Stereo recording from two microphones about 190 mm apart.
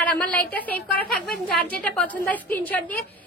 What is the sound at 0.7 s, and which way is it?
Speech, 55° left (ahead or behind).